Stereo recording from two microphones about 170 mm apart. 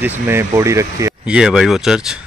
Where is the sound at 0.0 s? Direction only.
10° right (ahead or behind).